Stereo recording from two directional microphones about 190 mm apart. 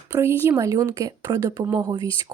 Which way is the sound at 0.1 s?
15° right (ahead or behind).